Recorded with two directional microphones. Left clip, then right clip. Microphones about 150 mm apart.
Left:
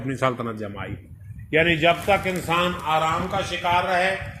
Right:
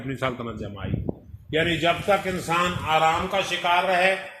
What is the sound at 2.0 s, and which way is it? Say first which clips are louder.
A man's voice: left 1 dB; 25° left (ahead or behind).